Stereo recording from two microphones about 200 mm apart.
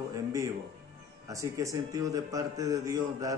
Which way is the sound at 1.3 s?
15° right (ahead or behind).